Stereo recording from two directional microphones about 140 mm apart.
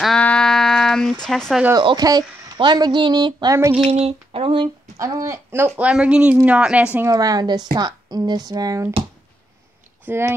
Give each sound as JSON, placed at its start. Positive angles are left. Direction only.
{"t": 0.0, "sound": "a sound", "side_deg": 5}
{"t": 1.2, "sound": "speech", "side_deg": 5}
{"t": 1.8, "sound": "speech", "side_deg": -30}
{"t": 3.9, "sound": "a sound", "side_deg": -45}
{"t": 4.9, "sound": "speech", "side_deg": -20}
{"t": 7.1, "sound": "speech", "side_deg": -25}
{"t": 10.0, "sound": "speech", "side_deg": -15}